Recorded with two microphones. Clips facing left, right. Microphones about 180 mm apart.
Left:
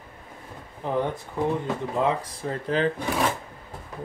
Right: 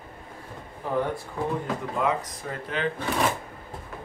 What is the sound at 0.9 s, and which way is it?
Speech, 20° left (ahead or behind).